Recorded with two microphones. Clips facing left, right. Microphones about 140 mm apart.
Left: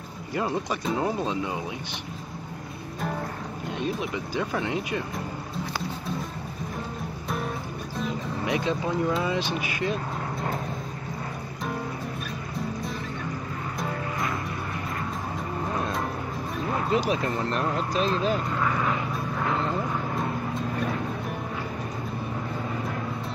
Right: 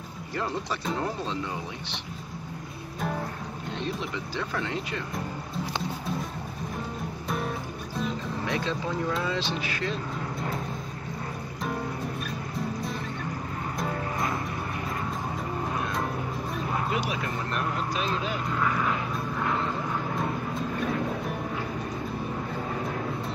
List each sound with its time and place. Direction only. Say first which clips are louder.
0.9 s speech: left 6 dB; 10° left (ahead or behind)
4.4 s speech: left 4 dB; 15° left (ahead or behind)
7.2 s music: even; centre (ahead or behind)
8.5 s speech: left 4 dB; 15° left (ahead or behind)
16.9 s speech: left 5 dB; 35° left (ahead or behind)